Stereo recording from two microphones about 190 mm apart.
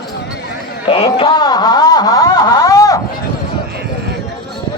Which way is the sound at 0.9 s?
30° left (ahead or behind).